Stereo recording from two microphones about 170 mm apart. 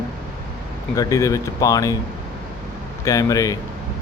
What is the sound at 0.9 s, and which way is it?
Speech, 20° left (ahead or behind).